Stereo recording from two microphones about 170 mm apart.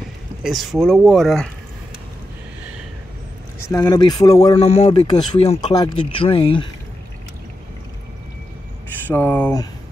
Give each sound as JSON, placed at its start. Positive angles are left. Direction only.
{"t": 0.4, "sound": "speech", "side_deg": 0}
{"t": 3.5, "sound": "speech", "side_deg": 15}
{"t": 4.6, "sound": "speech", "side_deg": 35}
{"t": 5.0, "sound": "speech", "side_deg": 25}
{"t": 9.1, "sound": "speech", "side_deg": 10}